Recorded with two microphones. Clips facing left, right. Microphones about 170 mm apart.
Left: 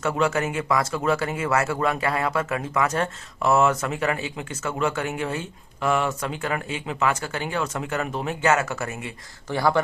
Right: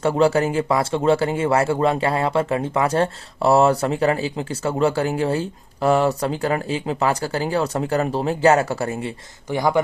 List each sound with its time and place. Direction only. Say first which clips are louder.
0.0 s speech: right 6 dB; 30° right (ahead or behind)
9.5 s speech: right 2 dB; 15° right (ahead or behind)